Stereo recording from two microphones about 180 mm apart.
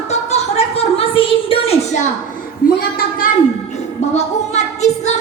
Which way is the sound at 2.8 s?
55° left (ahead or behind).